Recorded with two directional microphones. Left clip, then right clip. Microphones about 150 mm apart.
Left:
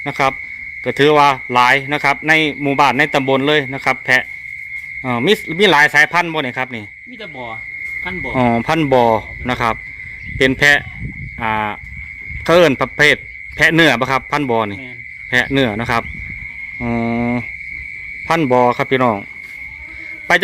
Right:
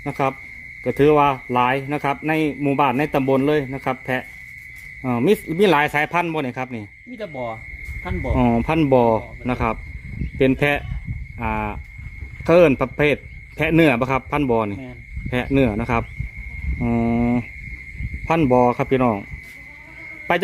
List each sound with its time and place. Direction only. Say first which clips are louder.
0.0 s a man's voice: left 6 dB; centre (ahead or behind)
7.2 s frog: right 1 dB; 45° right (ahead or behind)
8.4 s a man's voice: left 4 dB; 5° left (ahead or behind)